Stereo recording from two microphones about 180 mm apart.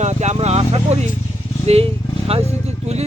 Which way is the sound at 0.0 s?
40° right (ahead or behind).